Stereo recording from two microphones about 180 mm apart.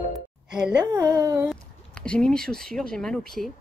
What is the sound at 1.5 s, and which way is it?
Speech, 5° left (ahead or behind).